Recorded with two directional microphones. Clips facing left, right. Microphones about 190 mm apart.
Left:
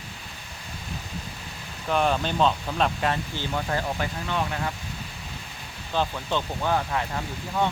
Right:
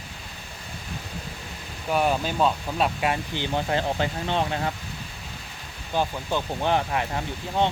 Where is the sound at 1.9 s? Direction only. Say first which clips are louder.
Even; 10° right (ahead or behind); by 4.7 s 30° right (ahead or behind).